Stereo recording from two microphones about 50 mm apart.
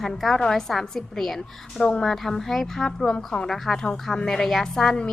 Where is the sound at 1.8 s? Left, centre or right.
Centre.